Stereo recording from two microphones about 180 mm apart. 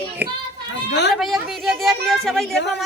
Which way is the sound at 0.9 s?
70° left (ahead or behind).